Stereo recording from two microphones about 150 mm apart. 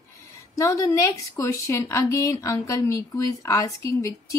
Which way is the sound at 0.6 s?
20° left (ahead or behind).